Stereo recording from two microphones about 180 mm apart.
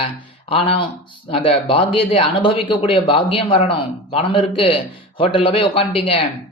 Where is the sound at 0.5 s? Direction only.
30° left (ahead or behind).